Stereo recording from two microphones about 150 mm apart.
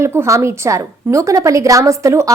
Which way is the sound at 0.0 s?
20° right (ahead or behind).